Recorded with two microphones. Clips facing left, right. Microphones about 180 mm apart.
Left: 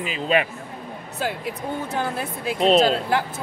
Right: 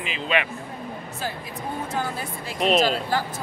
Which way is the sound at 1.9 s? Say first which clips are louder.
Left 2 dB; 60° left (ahead or behind).